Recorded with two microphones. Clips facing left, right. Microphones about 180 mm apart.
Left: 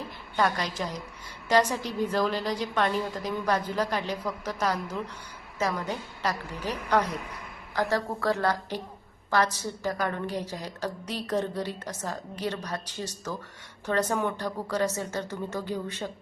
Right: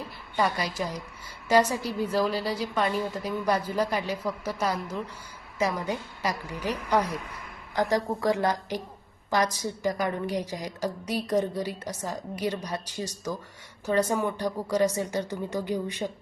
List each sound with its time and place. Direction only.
0.3 s a woman's voice: 10° right (ahead or behind)